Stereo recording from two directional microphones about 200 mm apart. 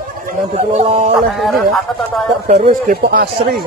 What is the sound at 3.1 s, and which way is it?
Speech, 50° right (ahead or behind).